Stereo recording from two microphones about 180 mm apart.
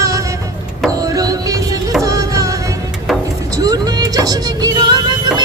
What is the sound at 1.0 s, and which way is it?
Music, 20° right (ahead or behind).